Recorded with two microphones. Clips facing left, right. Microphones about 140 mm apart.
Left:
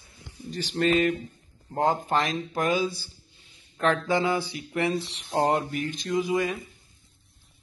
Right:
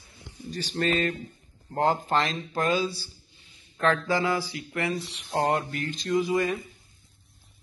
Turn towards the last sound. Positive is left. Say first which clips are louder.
# right 1 dB
turn(degrees=0)  # may be behind; listen again after turning